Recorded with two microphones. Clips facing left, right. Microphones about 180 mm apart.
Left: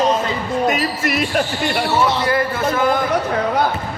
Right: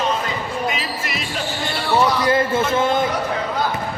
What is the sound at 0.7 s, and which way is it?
Speech, 50° left (ahead or behind).